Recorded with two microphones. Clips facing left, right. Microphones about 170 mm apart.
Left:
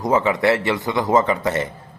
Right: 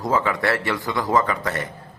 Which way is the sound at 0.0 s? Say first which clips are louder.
Left 4 dB; 20° left (ahead or behind).